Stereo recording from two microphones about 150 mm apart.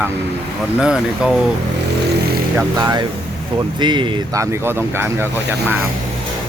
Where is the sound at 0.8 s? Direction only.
5° right (ahead or behind).